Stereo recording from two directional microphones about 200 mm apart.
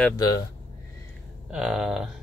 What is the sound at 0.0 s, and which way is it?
Speech, 15° left (ahead or behind).